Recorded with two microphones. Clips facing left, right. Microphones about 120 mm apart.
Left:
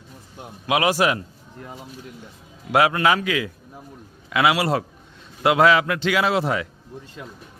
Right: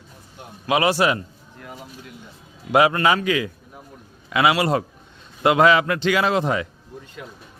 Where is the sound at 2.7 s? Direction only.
Centre (ahead or behind).